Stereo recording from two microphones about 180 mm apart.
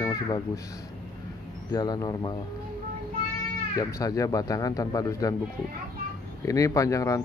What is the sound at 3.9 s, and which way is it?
Speech, 20° left (ahead or behind).